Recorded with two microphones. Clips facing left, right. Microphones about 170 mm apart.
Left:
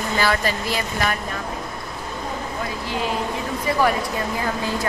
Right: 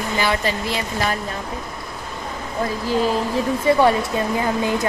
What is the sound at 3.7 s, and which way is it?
Speech, 25° right (ahead or behind).